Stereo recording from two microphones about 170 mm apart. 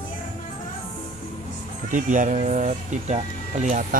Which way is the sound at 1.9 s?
50° right (ahead or behind).